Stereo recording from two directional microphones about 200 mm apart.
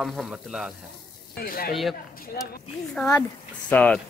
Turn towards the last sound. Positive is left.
turn(degrees=5)  # may be behind; listen again after turning